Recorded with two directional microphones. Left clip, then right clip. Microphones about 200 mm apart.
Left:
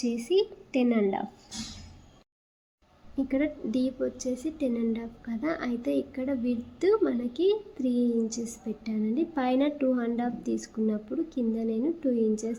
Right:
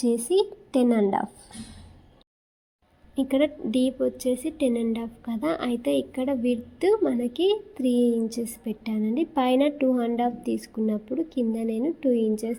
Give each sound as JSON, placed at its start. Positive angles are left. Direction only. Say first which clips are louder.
{"t": 0.0, "sound": "a woman's voice", "louder": "right 4 dB", "side_deg": -20}
{"t": 3.2, "sound": "a woman's voice", "louder": "right 5 dB", "side_deg": -20}